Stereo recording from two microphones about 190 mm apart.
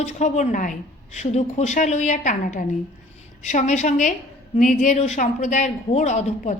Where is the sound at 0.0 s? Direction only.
35° left (ahead or behind).